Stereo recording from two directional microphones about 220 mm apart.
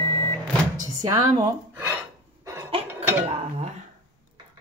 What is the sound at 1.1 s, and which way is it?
Speech, 15° right (ahead or behind).